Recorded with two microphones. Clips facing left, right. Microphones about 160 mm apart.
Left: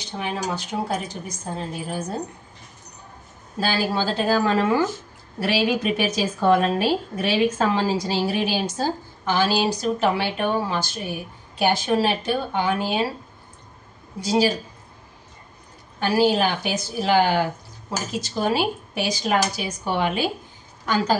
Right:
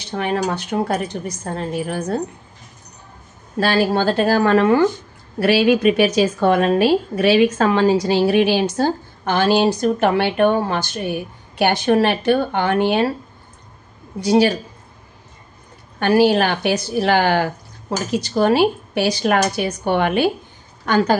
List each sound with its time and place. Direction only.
0.1 s a woman's voice: 70° right (ahead or behind)
3.5 s a woman's voice: 65° right (ahead or behind)
14.2 s a woman's voice: 65° right (ahead or behind)
16.0 s a woman's voice: 65° right (ahead or behind)